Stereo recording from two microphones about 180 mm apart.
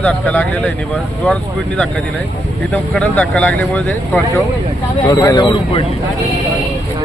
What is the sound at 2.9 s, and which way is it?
Speech, 5° left (ahead or behind).